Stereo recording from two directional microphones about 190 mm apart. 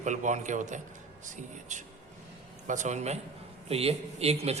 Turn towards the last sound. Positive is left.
turn(degrees=-35)  # may be behind; listen again after turning